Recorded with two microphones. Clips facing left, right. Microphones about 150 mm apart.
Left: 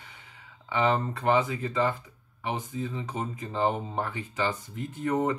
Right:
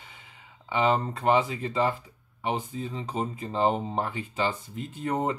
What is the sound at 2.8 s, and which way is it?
Speech, 30° right (ahead or behind).